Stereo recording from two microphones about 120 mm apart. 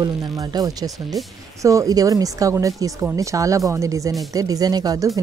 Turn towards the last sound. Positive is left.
turn(degrees=-30)  # may be behind; listen again after turning